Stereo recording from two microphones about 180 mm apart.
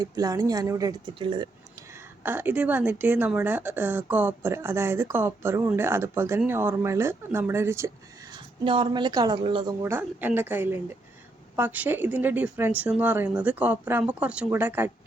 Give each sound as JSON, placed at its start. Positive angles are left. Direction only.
{"t": 0.0, "sound": "speech", "side_deg": -20}
{"t": 2.2, "sound": "a woman's voice", "side_deg": -10}
{"t": 8.6, "sound": "speech", "side_deg": -25}
{"t": 9.8, "sound": "a woman's voice", "side_deg": -10}